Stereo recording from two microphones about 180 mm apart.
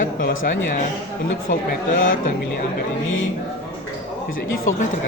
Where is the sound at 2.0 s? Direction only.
45° left (ahead or behind).